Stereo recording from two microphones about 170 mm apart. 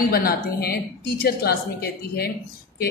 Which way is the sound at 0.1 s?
65° left (ahead or behind).